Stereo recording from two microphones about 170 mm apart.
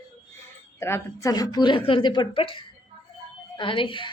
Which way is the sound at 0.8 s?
15° left (ahead or behind).